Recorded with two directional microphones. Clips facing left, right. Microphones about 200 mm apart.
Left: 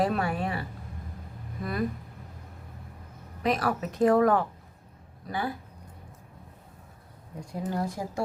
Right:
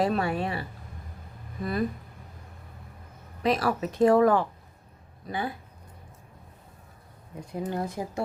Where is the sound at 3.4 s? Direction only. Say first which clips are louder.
Right 2 dB; 25° right (ahead or behind).